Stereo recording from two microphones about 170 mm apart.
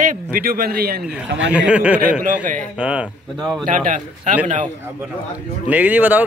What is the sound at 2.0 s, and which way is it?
Speech, 55° right (ahead or behind).